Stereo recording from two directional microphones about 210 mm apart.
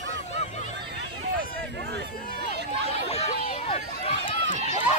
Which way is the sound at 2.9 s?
30° left (ahead or behind).